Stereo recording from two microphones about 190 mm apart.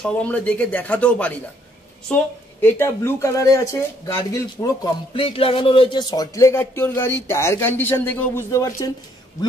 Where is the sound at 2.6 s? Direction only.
15° left (ahead or behind).